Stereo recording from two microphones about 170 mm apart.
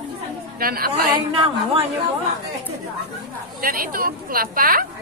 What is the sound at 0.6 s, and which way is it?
Speech, 60° right (ahead or behind).